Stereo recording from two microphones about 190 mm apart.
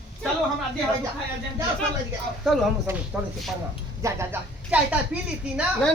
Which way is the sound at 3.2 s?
5° right (ahead or behind).